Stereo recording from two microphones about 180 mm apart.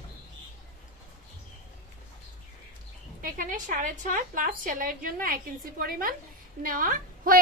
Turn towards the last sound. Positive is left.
turn(degrees=-50)  # may be behind; listen again after turning